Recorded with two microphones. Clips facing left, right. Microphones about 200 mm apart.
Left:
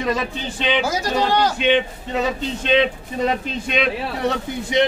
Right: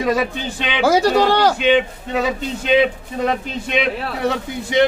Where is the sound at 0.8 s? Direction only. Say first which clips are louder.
Right 7 dB; 70° right (ahead or behind).